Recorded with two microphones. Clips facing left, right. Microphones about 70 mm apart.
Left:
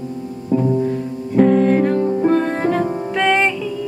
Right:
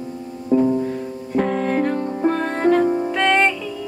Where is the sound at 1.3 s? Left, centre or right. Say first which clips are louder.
Left 6 dB; centre.